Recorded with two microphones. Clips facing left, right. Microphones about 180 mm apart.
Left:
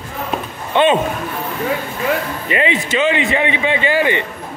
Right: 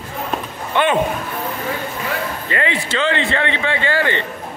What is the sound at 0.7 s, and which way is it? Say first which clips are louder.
Speech: left 4 dB; 20° left (ahead or behind).